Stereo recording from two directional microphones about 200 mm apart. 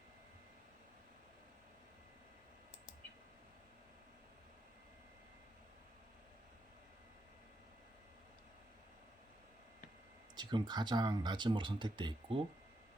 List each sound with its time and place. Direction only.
10.3 s speech: 20° right (ahead or behind)